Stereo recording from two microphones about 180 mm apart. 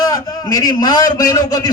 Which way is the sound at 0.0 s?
20° left (ahead or behind).